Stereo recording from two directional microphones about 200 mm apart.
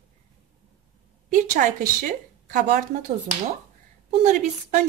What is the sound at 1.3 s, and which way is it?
A woman's voice, 40° right (ahead or behind).